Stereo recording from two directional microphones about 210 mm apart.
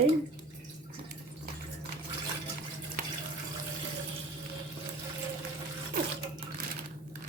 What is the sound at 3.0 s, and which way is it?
Water tap, 40° right (ahead or behind).